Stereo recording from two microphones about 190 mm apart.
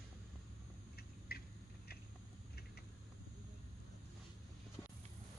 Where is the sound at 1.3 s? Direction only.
55° left (ahead or behind).